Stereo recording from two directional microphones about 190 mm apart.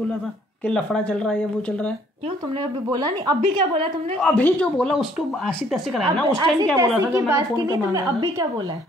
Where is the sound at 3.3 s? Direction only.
30° right (ahead or behind).